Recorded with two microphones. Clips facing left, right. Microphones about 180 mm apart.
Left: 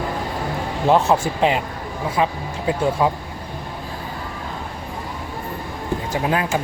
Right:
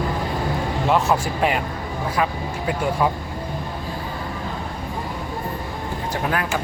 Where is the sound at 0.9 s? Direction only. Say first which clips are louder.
Left 4 dB; 30° left (ahead or behind).